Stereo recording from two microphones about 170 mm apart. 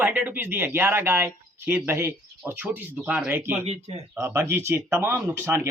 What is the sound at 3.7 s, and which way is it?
Speech, 40° right (ahead or behind).